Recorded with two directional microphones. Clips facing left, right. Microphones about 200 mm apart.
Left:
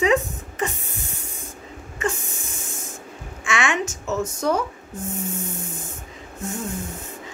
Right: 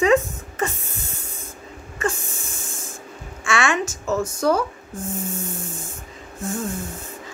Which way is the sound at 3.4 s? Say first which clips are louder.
Right 2 dB; 20° left (ahead or behind).